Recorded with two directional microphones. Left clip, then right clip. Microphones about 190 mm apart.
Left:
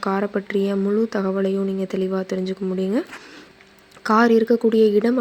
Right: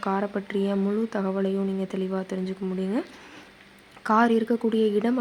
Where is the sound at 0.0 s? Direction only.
20° left (ahead or behind).